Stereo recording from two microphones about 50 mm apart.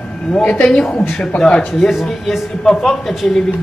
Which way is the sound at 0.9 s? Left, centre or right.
Left.